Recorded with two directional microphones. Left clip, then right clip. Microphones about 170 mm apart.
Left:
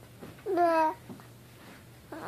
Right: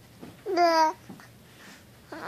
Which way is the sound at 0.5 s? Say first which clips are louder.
Right 4 dB; 15° right (ahead or behind).